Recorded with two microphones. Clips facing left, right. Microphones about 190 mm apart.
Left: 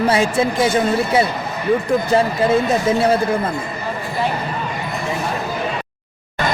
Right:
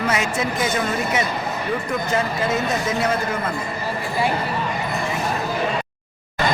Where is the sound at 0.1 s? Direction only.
30° left (ahead or behind).